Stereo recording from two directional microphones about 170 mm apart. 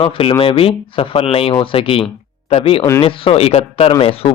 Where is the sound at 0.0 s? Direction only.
30° left (ahead or behind).